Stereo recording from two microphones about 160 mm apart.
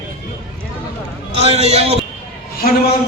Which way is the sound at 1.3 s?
40° right (ahead or behind).